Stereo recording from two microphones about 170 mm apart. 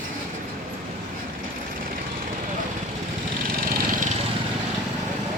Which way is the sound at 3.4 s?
55° right (ahead or behind).